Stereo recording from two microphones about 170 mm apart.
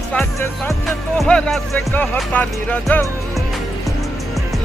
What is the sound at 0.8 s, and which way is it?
Speech, centre (ahead or behind).